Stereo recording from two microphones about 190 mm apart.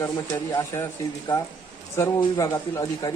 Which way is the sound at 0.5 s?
15° left (ahead or behind).